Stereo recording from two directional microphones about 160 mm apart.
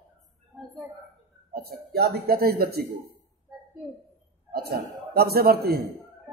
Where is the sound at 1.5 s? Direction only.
75° right (ahead or behind).